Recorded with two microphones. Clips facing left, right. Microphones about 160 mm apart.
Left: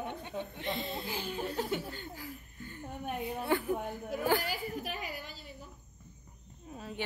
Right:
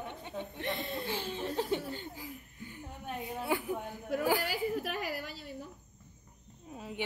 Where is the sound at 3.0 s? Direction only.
15° left (ahead or behind).